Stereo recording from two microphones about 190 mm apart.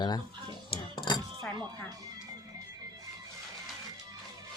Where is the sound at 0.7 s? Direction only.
25° left (ahead or behind).